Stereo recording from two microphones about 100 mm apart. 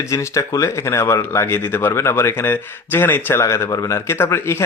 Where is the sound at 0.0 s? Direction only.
30° left (ahead or behind).